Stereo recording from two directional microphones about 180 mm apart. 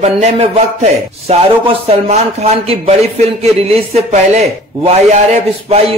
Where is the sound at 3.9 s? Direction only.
35° right (ahead or behind).